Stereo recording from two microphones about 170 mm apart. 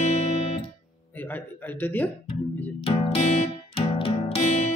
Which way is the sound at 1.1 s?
10° left (ahead or behind).